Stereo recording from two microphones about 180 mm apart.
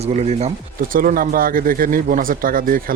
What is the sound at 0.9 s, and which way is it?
Speech, 50° right (ahead or behind).